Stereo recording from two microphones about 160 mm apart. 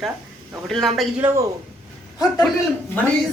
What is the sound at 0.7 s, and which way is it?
Speech, centre (ahead or behind).